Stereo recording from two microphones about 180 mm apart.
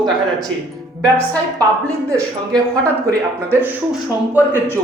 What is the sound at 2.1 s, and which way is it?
Speech, 15° right (ahead or behind).